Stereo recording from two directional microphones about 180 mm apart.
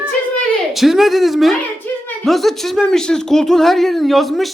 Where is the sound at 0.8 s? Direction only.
Centre (ahead or behind).